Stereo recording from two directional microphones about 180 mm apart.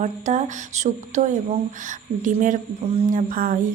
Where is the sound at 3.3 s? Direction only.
55° right (ahead or behind).